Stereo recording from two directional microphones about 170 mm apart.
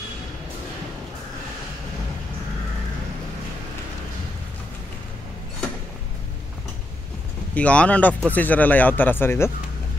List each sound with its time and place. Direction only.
7.5 s speech: 5° left (ahead or behind)